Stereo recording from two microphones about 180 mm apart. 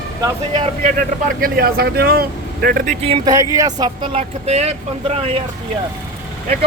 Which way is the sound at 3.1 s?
20° right (ahead or behind).